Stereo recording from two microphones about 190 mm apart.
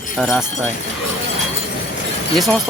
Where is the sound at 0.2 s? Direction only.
Centre (ahead or behind).